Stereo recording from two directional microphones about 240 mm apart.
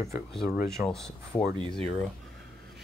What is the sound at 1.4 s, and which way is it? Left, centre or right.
Speech, centre.